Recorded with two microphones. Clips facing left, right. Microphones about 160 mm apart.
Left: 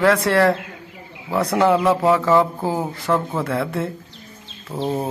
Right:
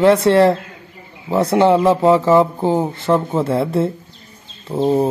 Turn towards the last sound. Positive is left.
turn(degrees=-25)  # may be behind; listen again after turning